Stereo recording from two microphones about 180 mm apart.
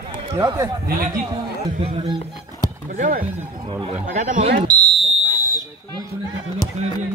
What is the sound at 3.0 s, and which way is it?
Speech, 45° right (ahead or behind).